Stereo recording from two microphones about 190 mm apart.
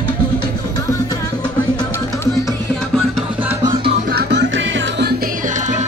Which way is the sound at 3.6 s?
20° right (ahead or behind).